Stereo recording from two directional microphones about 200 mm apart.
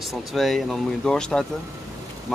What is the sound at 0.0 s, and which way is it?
Speech, centre (ahead or behind).